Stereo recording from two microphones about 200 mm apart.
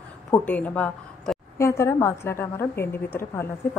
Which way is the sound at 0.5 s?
10° left (ahead or behind).